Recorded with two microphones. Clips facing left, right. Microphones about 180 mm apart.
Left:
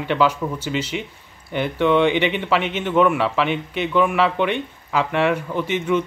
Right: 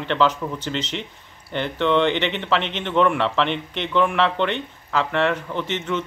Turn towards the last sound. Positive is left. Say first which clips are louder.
# left 5 dB
turn(degrees=10)  # may be behind; listen again after turning